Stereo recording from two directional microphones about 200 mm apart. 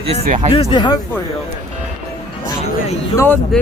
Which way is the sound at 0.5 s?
25° left (ahead or behind).